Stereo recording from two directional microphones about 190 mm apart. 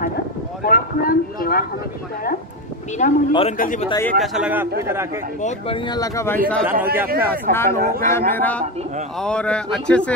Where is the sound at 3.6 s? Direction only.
45° left (ahead or behind).